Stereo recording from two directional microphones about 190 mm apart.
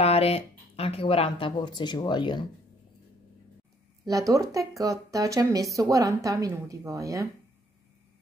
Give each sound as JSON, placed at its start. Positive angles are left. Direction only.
{"t": 0.0, "sound": "speech", "side_deg": 30}
{"t": 4.0, "sound": "speech", "side_deg": -15}